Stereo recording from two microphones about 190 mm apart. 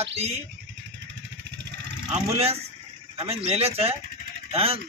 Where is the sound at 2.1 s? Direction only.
30° right (ahead or behind).